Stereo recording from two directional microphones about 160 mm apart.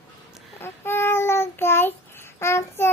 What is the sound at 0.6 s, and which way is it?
Child singing, 15° left (ahead or behind).